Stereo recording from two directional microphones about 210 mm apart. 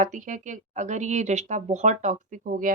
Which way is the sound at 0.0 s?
35° right (ahead or behind).